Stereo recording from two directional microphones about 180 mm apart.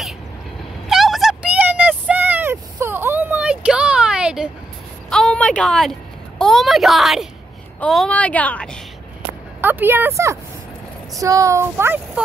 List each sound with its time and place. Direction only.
0.8 s a sound: centre (ahead or behind)
5.1 s a woman's voice: 5° left (ahead or behind)
9.6 s speech: 10° right (ahead or behind)